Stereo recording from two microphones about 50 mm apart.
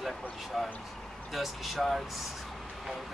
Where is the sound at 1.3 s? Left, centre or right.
Centre.